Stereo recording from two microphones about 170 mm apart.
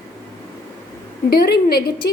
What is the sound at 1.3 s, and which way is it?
Speech, 70° left (ahead or behind).